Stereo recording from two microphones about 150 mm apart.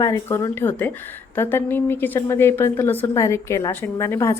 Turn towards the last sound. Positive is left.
turn(degrees=20)  # may be behind; listen again after turning